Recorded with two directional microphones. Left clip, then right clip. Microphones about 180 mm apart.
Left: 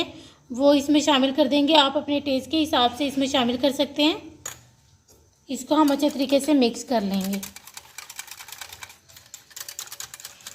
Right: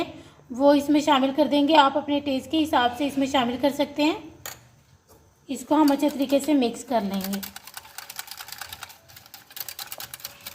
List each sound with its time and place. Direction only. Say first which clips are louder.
0.5 s a woman's voice: even; 10° left (ahead or behind)
5.8 s a woman's voice: left 1 dB; 10° left (ahead or behind)